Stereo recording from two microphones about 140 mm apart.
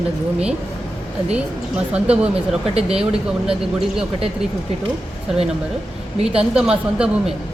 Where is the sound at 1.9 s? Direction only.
10° right (ahead or behind).